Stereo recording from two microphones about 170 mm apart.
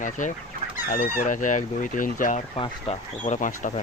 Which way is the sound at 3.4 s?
50° left (ahead or behind).